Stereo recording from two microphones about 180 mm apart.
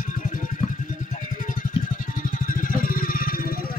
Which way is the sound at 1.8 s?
45° left (ahead or behind).